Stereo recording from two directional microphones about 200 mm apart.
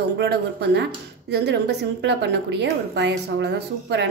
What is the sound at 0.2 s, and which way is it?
A woman's voice, 55° right (ahead or behind).